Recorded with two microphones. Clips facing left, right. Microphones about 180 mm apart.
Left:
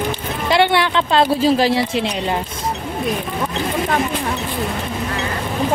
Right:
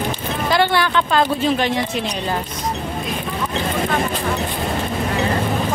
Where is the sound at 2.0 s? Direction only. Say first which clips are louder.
Left 2 dB; 20° left (ahead or behind).